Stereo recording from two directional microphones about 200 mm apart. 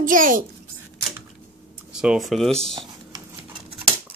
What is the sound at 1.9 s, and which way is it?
Speech, centre (ahead or behind).